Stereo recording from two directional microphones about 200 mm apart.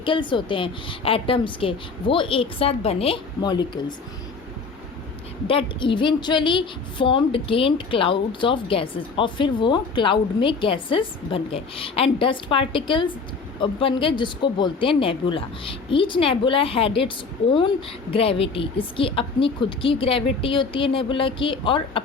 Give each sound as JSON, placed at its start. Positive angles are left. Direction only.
{"t": 0.0, "sound": "a woman's voice", "side_deg": 25}
{"t": 5.5, "sound": "a woman's voice", "side_deg": 25}
{"t": 18.1, "sound": "a woman's voice", "side_deg": 30}